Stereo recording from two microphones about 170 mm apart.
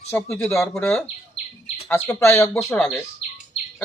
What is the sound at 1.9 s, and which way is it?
Speech, 15° left (ahead or behind).